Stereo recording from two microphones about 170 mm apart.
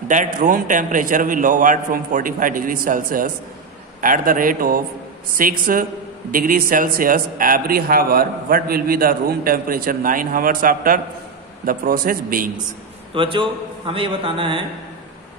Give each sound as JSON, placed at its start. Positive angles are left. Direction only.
{"t": 0.1, "sound": "a man's voice", "side_deg": -50}
{"t": 13.1, "sound": "a man's voice", "side_deg": -30}